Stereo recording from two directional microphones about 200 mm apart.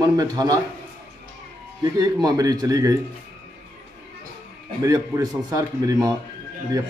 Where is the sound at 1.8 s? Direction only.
20° right (ahead or behind).